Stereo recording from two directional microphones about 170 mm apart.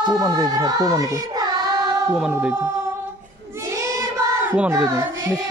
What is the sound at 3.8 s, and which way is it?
Child singing, 20° right (ahead or behind).